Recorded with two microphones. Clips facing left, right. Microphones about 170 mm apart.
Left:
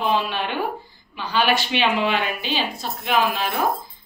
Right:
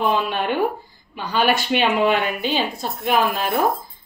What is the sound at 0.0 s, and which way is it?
A woman's voice, 50° right (ahead or behind).